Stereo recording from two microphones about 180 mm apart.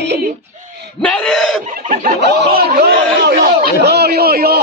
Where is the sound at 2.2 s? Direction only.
65° right (ahead or behind).